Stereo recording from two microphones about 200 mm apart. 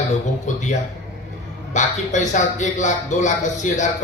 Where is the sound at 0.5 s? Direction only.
40° left (ahead or behind).